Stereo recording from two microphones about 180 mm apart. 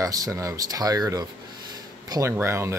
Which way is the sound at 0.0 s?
20° right (ahead or behind).